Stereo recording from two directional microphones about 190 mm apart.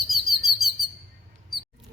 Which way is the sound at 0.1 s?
Centre (ahead or behind).